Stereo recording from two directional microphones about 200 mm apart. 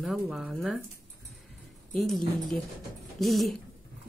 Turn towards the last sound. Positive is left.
turn(degrees=0)  # may be behind; listen again after turning